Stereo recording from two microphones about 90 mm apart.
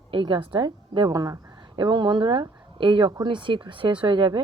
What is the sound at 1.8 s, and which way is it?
A woman's voice, 60° right (ahead or behind).